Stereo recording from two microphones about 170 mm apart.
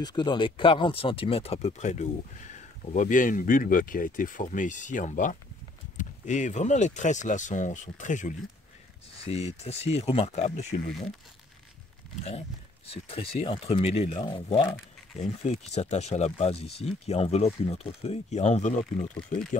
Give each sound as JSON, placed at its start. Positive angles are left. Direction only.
{"t": 0.0, "sound": "speech", "side_deg": 25}
{"t": 12.3, "sound": "speech", "side_deg": 35}
{"t": 19.1, "sound": "speech", "side_deg": 5}